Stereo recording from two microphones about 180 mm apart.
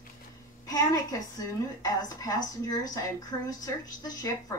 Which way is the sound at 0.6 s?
20° left (ahead or behind).